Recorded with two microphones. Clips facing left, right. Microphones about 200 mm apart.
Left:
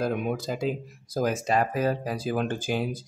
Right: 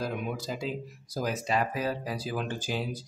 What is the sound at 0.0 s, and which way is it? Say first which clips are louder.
Speech: left 6 dB; 50° left (ahead or behind).